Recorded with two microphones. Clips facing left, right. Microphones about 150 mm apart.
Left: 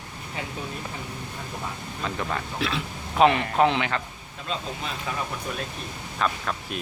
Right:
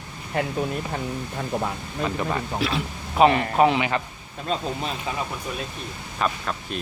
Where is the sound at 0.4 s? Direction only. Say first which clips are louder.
Right 10 dB; 60° right (ahead or behind).